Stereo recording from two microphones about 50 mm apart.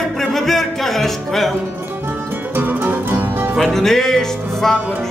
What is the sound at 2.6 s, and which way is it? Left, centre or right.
Music, right.